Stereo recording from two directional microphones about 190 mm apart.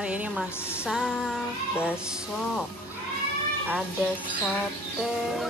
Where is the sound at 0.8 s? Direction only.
Centre (ahead or behind).